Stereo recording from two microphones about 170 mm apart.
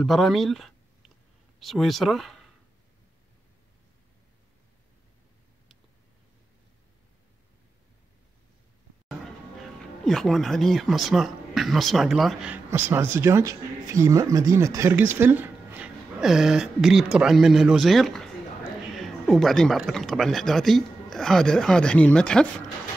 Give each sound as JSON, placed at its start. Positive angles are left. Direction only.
{"t": 0.0, "sound": "speech", "side_deg": 0}
{"t": 9.2, "sound": "speech", "side_deg": 0}
{"t": 12.7, "sound": "speech", "side_deg": -10}